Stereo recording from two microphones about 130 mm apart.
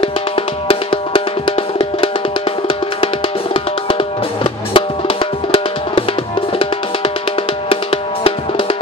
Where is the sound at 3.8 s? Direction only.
45° left (ahead or behind).